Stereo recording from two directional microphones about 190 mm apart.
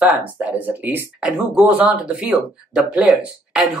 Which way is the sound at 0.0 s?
5° right (ahead or behind).